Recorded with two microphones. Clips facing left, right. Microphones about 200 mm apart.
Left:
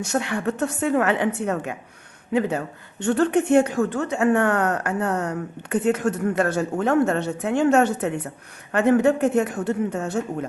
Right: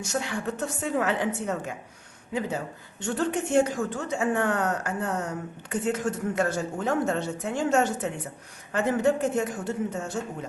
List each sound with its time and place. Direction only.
0.0 s a woman's voice: 65° left (ahead or behind)